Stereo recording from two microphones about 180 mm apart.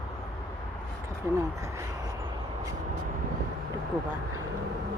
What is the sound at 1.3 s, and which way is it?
Speech, 15° right (ahead or behind).